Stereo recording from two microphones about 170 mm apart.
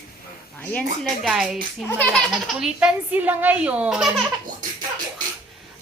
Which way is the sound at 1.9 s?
10° left (ahead or behind).